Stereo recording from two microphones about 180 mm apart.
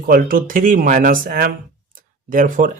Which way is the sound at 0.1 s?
55° right (ahead or behind).